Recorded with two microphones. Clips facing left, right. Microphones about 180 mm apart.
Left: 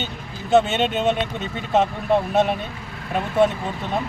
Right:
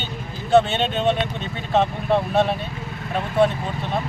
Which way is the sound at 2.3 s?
20° left (ahead or behind).